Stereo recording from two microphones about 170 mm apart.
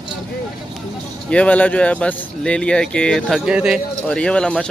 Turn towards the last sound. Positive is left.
turn(degrees=5)  # may be behind; listen again after turning